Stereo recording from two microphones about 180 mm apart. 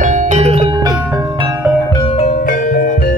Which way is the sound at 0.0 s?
45° right (ahead or behind).